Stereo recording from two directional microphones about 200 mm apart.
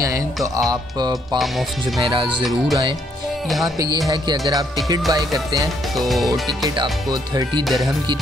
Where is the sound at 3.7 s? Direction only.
20° right (ahead or behind).